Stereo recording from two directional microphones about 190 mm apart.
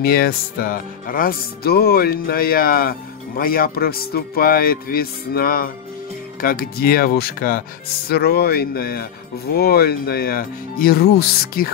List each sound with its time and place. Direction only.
0.0 s music: 55° left (ahead or behind)
8.1 s speech: 55° left (ahead or behind)